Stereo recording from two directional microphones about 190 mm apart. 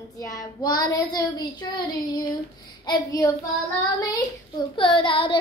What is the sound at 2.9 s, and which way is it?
Child singing, 20° left (ahead or behind).